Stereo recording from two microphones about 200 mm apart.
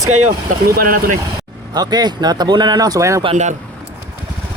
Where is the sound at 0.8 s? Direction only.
45° right (ahead or behind).